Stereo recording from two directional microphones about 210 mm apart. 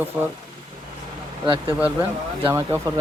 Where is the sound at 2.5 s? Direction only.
10° right (ahead or behind).